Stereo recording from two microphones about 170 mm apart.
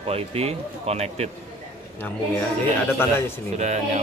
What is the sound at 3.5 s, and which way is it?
Speech, 40° right (ahead or behind).